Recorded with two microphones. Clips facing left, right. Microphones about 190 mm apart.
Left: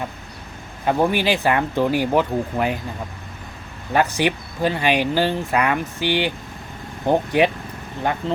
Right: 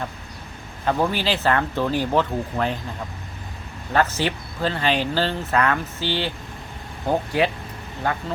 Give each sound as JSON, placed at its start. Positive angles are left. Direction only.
{"t": 0.9, "sound": "speech", "side_deg": 15}
{"t": 3.9, "sound": "speech", "side_deg": 15}